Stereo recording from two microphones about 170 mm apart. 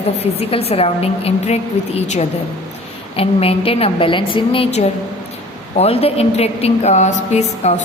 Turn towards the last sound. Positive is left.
turn(degrees=40)  # may be behind; listen again after turning